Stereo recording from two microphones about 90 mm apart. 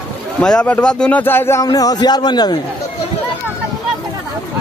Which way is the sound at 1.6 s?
45° left (ahead or behind).